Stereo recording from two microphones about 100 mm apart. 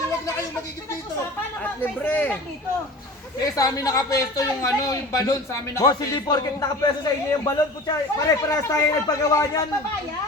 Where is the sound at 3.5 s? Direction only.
40° left (ahead or behind).